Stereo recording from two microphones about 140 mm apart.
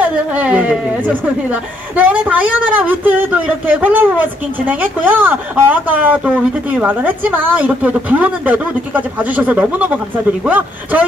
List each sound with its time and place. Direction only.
0.0 s speech: 10° right (ahead or behind)